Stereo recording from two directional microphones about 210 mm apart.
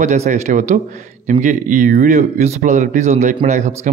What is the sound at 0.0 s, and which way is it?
Speech, 35° right (ahead or behind).